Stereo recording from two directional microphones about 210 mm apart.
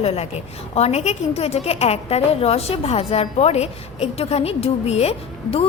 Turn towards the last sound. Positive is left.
turn(degrees=30)  # may be behind; listen again after turning